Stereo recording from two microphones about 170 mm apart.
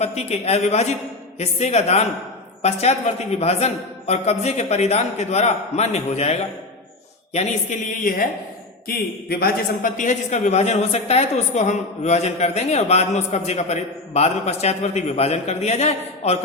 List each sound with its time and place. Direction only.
0.0 s a man's voice: 40° left (ahead or behind)
7.3 s a woman's voice: 50° left (ahead or behind)
8.9 s a man's voice: 65° left (ahead or behind); by 16.4 s 40° left (ahead or behind)